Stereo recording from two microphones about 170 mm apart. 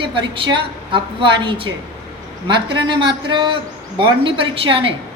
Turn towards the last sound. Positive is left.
turn(degrees=-30)  # may be behind; listen again after turning